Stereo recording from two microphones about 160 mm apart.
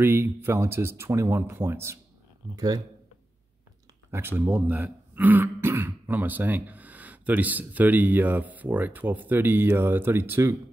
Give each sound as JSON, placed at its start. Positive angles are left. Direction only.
{"t": 0.0, "sound": "speech", "side_deg": -15}
{"t": 4.1, "sound": "speech", "side_deg": -15}